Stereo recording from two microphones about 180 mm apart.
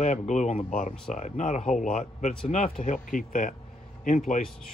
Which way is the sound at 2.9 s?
45° left (ahead or behind).